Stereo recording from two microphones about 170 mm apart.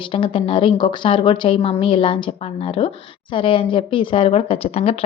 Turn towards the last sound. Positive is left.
turn(degrees=35)  # may be behind; listen again after turning